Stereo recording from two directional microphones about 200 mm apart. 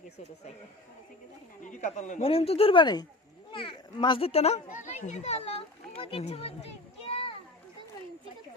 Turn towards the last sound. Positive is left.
turn(degrees=30)  # may be behind; listen again after turning